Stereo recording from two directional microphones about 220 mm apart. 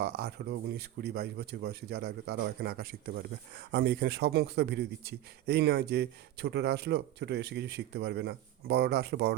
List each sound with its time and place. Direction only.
0.0 s speech: 45° right (ahead or behind)